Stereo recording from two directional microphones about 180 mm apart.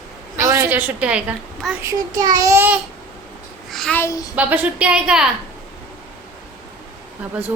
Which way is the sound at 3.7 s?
Centre (ahead or behind).